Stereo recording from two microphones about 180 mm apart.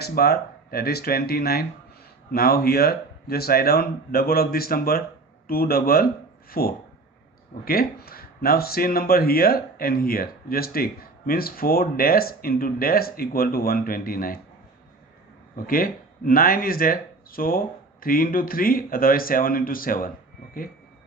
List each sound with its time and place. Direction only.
0.0 s speech: 60° left (ahead or behind)
15.5 s speech: 50° left (ahead or behind)